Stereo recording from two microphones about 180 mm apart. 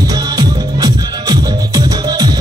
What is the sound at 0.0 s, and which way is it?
Music, 20° right (ahead or behind).